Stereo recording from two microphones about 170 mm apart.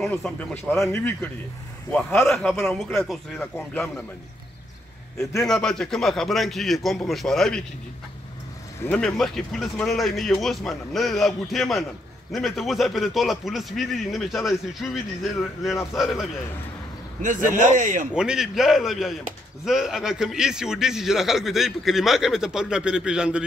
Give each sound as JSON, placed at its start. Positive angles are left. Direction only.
{"t": 0.0, "sound": "a man's voice", "side_deg": 5}
{"t": 5.1, "sound": "speech", "side_deg": 15}
{"t": 5.5, "sound": "a man's voice", "side_deg": 5}
{"t": 8.8, "sound": "a man's voice", "side_deg": 5}
{"t": 15.9, "sound": "a man's voice", "side_deg": 0}
{"t": 17.2, "sound": "a man's voice", "side_deg": -50}
{"t": 18.1, "sound": "a man's voice", "side_deg": -5}